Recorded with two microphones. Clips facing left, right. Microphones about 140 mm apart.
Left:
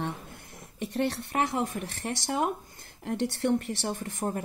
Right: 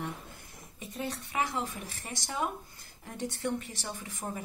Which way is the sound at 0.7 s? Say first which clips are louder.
Left 8 dB; 70° left (ahead or behind).